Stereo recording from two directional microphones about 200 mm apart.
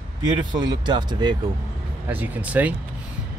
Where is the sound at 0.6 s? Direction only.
20° right (ahead or behind).